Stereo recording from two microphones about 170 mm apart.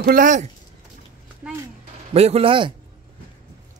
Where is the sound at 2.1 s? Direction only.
35° right (ahead or behind).